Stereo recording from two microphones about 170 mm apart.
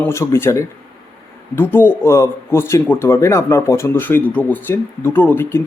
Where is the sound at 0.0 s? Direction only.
15° left (ahead or behind).